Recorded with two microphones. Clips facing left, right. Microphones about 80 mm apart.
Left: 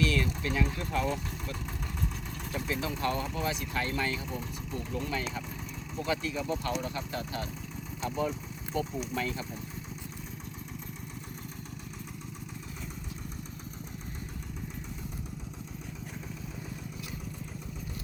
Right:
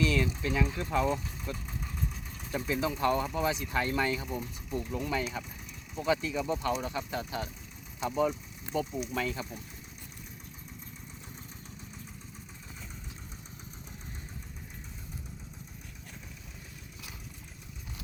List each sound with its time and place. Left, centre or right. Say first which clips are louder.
0.0 s vehicle: right 1 dB; centre
0.4 s speech: even; centre
2.6 s speech: right 4 dB; centre